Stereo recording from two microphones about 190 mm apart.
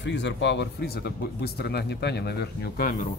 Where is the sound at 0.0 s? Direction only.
70° left (ahead or behind); by 3.1 s 45° left (ahead or behind).